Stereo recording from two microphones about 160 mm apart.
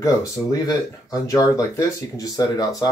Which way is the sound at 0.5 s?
20° left (ahead or behind).